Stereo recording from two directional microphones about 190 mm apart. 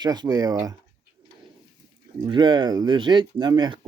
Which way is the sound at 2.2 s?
25° right (ahead or behind).